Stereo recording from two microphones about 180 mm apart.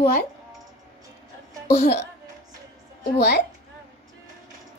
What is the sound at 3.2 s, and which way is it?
Speech, 65° left (ahead or behind).